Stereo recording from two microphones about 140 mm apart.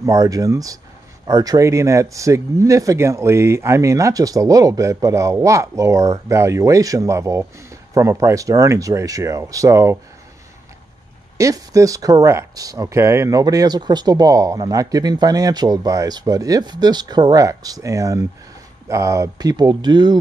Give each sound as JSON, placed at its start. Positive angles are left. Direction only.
{"t": 0.0, "sound": "speech", "side_deg": -25}
{"t": 11.3, "sound": "speech", "side_deg": -25}